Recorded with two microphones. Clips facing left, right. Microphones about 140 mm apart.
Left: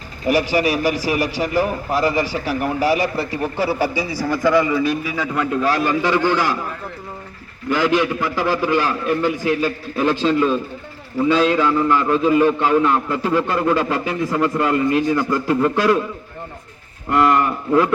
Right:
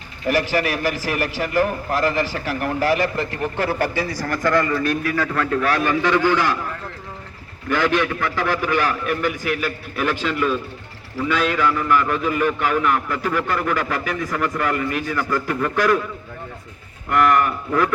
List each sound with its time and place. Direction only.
0.3 s a man's voice: 10° left (ahead or behind)
17.1 s a man's voice: 25° left (ahead or behind)